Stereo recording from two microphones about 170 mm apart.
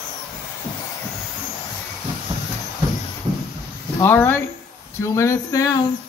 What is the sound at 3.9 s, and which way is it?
Speech, 15° left (ahead or behind).